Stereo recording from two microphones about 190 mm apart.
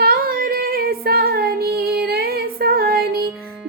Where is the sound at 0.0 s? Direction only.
50° right (ahead or behind).